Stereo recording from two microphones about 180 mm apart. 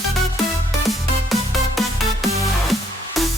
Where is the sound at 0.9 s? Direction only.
Centre (ahead or behind).